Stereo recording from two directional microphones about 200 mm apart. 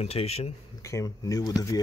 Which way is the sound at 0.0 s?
30° left (ahead or behind).